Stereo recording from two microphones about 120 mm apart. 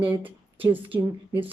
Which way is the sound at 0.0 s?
15° right (ahead or behind).